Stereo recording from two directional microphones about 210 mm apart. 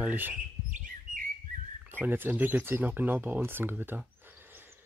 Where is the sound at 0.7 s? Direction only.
40° right (ahead or behind).